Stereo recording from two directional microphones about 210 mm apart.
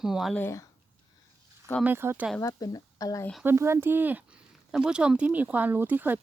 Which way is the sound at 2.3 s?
15° left (ahead or behind).